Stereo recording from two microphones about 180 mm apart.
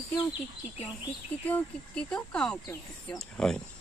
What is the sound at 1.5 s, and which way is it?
Speech, 5° left (ahead or behind).